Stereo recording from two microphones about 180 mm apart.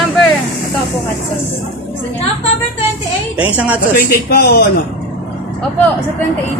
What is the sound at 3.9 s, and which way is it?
Speech, 55° left (ahead or behind).